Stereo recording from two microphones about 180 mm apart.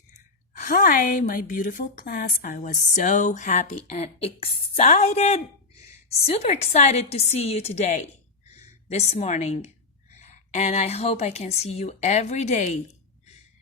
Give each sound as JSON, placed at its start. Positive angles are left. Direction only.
{"t": 0.6, "sound": "a woman's voice", "side_deg": 50}